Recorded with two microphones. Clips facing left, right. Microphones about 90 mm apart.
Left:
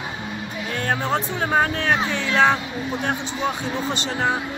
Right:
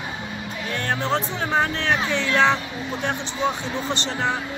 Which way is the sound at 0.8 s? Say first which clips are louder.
Left 1 dB; 5° left (ahead or behind).